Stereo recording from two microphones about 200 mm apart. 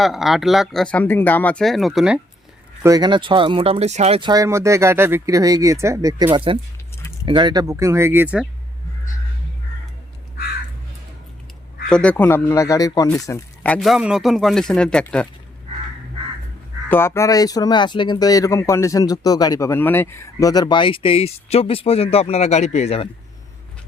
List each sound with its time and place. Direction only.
0.0 s speech: centre (ahead or behind)
2.8 s speech: 20° right (ahead or behind)
11.9 s speech: 5° left (ahead or behind)
16.9 s speech: 10° left (ahead or behind); by 23.0 s 30° left (ahead or behind)